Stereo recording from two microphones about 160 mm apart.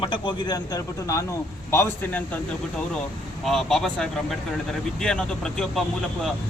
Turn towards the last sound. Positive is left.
turn(degrees=5)  # may be behind; listen again after turning